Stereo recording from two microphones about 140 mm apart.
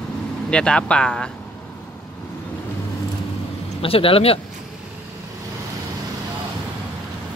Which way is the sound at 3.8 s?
40° left (ahead or behind).